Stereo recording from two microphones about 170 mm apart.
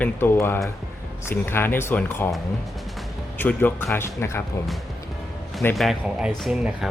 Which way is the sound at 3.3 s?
10° left (ahead or behind).